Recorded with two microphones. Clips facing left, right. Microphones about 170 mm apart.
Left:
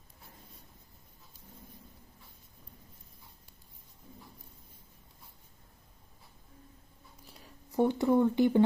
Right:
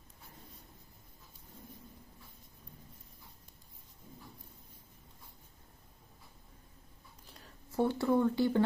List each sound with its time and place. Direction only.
7.2 s speech: 10° left (ahead or behind)